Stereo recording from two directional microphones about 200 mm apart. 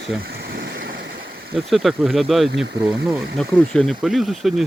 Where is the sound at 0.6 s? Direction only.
55° right (ahead or behind).